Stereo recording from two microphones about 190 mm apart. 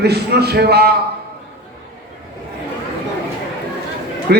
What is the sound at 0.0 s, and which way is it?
Speech, 60° right (ahead or behind).